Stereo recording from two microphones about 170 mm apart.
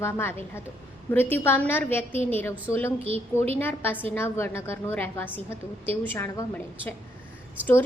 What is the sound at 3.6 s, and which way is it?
A woman's voice, 10° left (ahead or behind).